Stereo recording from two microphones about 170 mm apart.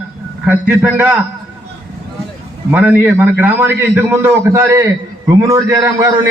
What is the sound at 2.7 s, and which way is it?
A man's voice, 10° right (ahead or behind).